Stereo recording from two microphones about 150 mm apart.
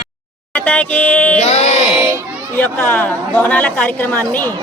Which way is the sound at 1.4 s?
45° left (ahead or behind).